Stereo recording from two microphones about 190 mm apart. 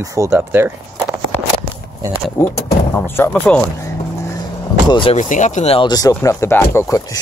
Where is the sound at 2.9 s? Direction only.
10° left (ahead or behind).